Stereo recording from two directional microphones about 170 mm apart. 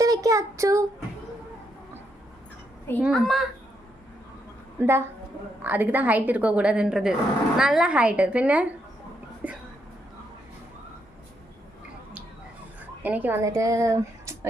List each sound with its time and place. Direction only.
0.0 s a sound: 20° right (ahead or behind)
3.0 s a child's voice: centre (ahead or behind)
4.8 s a woman's voice: 15° right (ahead or behind)
13.0 s a woman's voice: 10° right (ahead or behind)